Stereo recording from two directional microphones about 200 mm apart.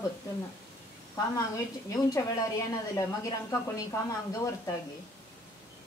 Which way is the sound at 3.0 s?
15° left (ahead or behind).